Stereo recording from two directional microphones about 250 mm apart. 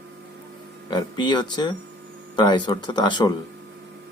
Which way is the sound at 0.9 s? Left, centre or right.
Centre.